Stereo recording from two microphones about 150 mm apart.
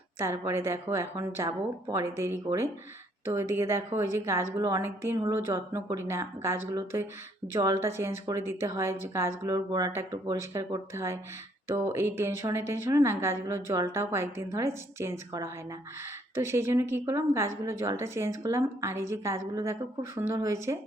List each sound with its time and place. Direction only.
0.2 s a woman's voice: 15° right (ahead or behind)